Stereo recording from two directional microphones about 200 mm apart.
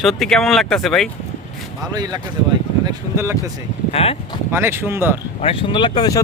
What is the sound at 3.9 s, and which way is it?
Speech, 30° left (ahead or behind).